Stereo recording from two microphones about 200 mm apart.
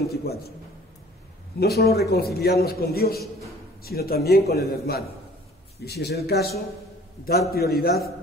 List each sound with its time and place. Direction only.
0.0 s a man's voice: 50° left (ahead or behind)
1.6 s a man's voice: 50° left (ahead or behind)